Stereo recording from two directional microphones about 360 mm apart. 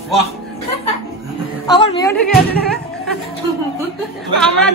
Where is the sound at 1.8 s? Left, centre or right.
Centre.